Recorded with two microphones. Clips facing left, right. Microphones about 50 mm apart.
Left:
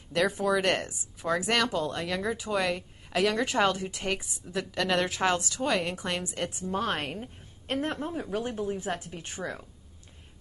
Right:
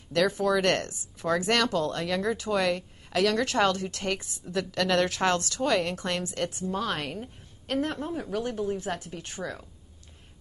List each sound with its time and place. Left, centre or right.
0.1 s speech: centre
6.7 s speech: left
8.0 s speech: centre